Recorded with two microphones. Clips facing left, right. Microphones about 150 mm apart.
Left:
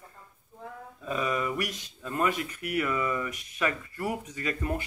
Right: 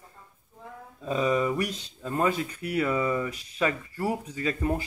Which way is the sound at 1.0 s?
30° right (ahead or behind).